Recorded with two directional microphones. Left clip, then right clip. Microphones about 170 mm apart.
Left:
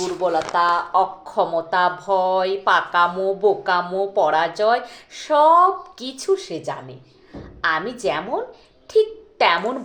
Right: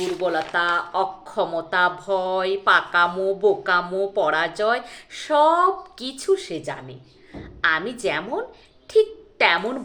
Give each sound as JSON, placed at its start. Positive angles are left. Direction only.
{"t": 0.5, "sound": "a woman's voice", "side_deg": -20}